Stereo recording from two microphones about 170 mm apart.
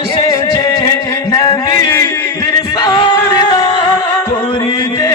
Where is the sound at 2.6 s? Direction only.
20° left (ahead or behind).